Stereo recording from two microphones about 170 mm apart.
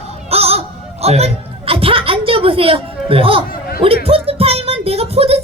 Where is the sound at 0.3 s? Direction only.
35° right (ahead or behind).